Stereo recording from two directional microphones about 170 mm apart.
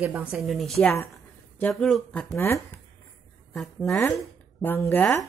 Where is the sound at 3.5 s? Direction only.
5° left (ahead or behind).